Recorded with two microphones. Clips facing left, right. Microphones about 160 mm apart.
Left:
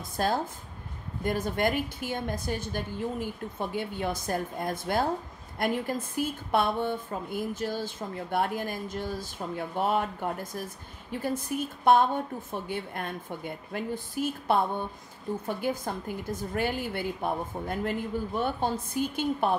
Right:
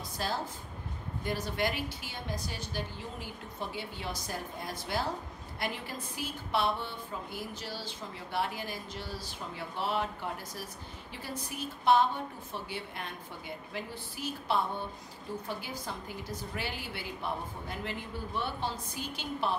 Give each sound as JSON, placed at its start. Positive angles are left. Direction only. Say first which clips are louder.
{"t": 0.2, "sound": "a woman's voice", "louder": "left 7 dB", "side_deg": 50}